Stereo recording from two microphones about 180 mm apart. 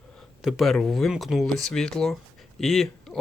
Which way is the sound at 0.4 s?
Centre (ahead or behind).